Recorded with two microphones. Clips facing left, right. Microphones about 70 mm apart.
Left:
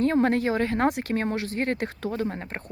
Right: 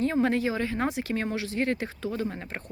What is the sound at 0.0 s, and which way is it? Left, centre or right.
Speech, left.